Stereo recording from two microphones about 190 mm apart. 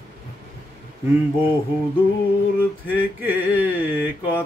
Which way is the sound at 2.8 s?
10° right (ahead or behind).